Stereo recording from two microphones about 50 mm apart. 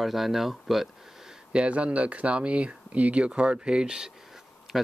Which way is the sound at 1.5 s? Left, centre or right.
Right.